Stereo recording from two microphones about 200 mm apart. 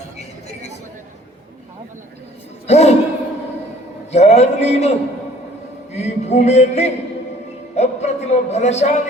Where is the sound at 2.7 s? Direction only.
35° left (ahead or behind).